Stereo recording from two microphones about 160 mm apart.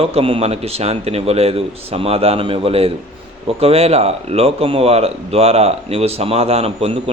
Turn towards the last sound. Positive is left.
turn(degrees=-40)  # may be behind; listen again after turning